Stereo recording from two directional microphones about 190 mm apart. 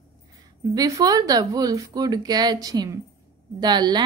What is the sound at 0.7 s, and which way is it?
A woman's voice, 20° right (ahead or behind).